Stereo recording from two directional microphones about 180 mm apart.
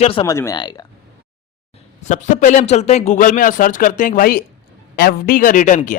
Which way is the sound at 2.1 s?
45° left (ahead or behind).